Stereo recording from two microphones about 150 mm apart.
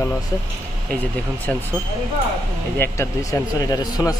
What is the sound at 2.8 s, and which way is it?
A man's voice, 20° left (ahead or behind).